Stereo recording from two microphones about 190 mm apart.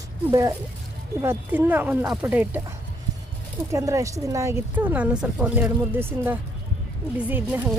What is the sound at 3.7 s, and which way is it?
Speech, 15° right (ahead or behind).